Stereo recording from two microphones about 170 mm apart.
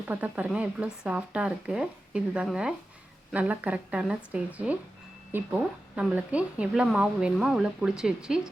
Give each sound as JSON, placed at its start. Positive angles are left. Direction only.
{"t": 0.1, "sound": "speech", "side_deg": -10}
{"t": 6.0, "sound": "speech", "side_deg": -10}